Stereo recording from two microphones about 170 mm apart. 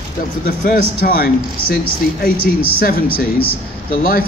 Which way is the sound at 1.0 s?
60° left (ahead or behind).